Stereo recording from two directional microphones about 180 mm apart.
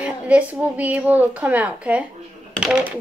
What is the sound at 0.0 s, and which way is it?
A woman's voice, 10° right (ahead or behind).